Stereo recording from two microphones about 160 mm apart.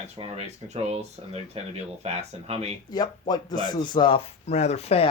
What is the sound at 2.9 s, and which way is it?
Speech, 25° left (ahead or behind).